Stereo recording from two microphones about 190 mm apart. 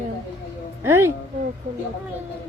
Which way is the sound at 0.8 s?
15° right (ahead or behind).